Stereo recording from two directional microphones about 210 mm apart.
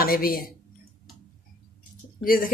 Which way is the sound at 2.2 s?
40° left (ahead or behind).